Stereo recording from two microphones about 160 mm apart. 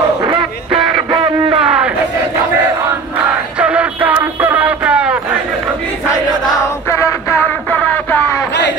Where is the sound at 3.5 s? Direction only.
5° right (ahead or behind).